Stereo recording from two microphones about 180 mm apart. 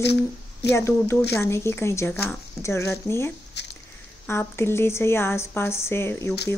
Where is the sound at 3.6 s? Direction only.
70° left (ahead or behind).